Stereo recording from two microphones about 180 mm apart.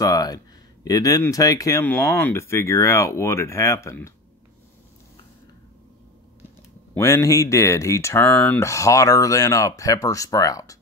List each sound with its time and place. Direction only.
0.0 s speech: 20° left (ahead or behind)
6.9 s speech: 15° left (ahead or behind)